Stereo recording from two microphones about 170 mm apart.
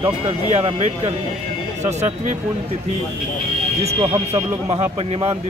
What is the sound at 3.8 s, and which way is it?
A man's voice, 30° right (ahead or behind).